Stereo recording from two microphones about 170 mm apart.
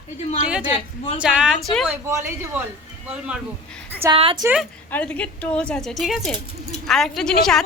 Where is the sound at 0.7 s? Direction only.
35° left (ahead or behind).